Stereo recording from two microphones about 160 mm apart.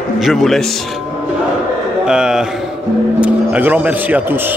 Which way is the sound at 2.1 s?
5° right (ahead or behind).